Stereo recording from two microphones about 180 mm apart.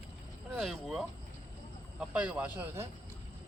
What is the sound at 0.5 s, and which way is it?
Vehicle, centre (ahead or behind).